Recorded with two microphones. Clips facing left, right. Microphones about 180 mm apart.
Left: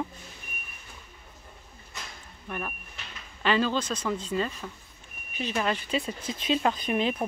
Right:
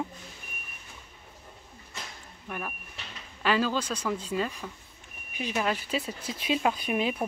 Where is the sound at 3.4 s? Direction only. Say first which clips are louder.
Left 1 dB; 5° right (ahead or behind).